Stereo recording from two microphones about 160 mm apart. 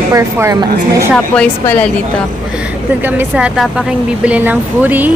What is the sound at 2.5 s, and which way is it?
Speech, 10° right (ahead or behind).